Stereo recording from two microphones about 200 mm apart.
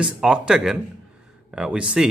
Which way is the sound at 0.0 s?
5° right (ahead or behind).